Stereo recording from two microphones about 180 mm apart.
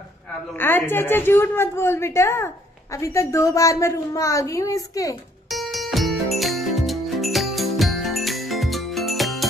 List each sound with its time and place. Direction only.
0.6 s a woman's voice: 10° left (ahead or behind)
5.5 s music: centre (ahead or behind)